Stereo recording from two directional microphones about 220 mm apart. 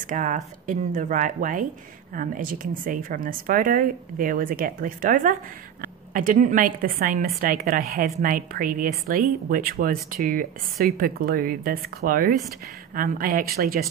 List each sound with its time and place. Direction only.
0.0 s a woman's voice: 35° right (ahead or behind)